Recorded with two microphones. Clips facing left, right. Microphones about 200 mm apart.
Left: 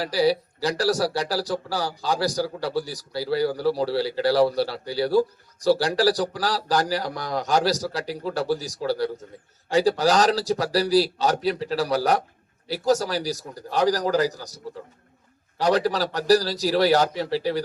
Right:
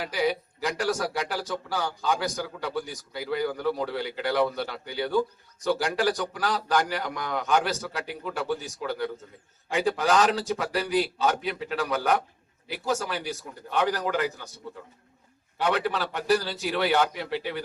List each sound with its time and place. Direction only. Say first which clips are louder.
0.0 s speech: left 5 dB; 35° left (ahead or behind)
15.5 s speech: left 5 dB; 35° left (ahead or behind)